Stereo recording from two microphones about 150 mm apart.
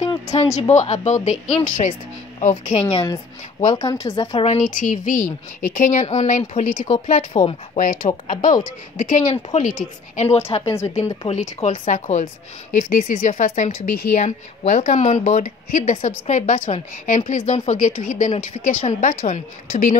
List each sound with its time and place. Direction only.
0.3 s a woman's voice: 45° left (ahead or behind)
2.5 s a woman's voice: 30° left (ahead or behind)
4.6 s a woman's voice: 60° left (ahead or behind)
12.7 s a woman's voice: 70° left (ahead or behind); by 20.0 s 50° left (ahead or behind)